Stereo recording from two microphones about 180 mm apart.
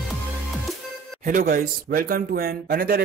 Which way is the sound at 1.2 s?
50° right (ahead or behind).